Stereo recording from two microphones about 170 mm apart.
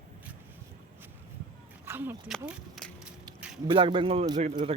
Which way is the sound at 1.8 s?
15° right (ahead or behind).